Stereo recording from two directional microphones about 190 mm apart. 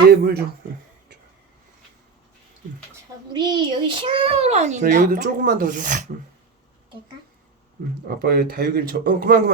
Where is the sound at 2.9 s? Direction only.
20° right (ahead or behind); by 6.1 s 45° right (ahead or behind).